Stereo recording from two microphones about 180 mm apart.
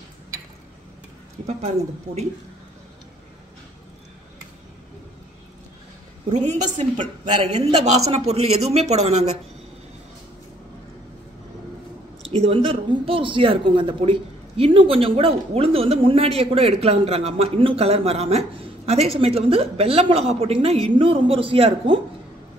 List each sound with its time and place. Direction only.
2.1 s speech: 40° right (ahead or behind)
6.3 s speech: 40° right (ahead or behind)
12.3 s speech: 30° right (ahead or behind)